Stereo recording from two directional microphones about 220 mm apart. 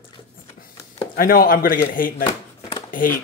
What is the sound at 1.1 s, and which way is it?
Speech, 40° left (ahead or behind).